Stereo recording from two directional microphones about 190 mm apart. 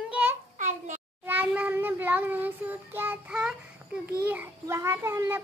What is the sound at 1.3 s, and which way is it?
Child singing, 10° right (ahead or behind).